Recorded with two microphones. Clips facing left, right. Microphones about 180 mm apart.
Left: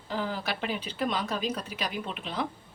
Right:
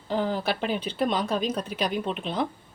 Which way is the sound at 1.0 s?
30° right (ahead or behind).